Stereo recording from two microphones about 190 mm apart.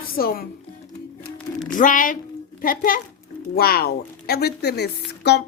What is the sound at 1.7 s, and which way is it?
A woman's voice, 45° left (ahead or behind).